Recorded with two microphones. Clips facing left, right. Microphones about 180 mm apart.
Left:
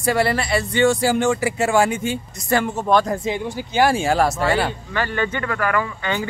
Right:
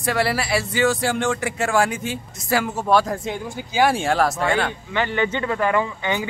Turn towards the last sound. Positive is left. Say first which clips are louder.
# even
turn(degrees=-15)  # may be behind; listen again after turning